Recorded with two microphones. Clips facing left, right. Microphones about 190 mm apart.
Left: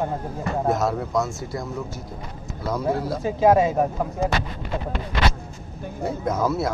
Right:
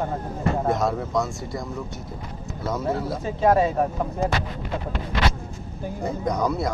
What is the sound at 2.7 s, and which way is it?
Speech, centre (ahead or behind).